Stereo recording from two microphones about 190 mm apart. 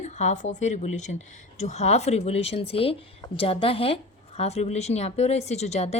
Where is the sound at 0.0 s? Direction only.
40° left (ahead or behind).